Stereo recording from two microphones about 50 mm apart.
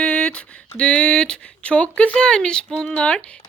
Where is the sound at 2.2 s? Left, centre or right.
Centre.